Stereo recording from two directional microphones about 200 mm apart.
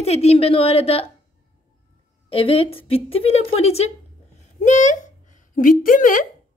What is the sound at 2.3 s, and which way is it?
A woman's voice, 30° left (ahead or behind).